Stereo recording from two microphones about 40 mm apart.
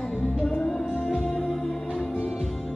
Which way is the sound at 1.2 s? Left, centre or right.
Centre.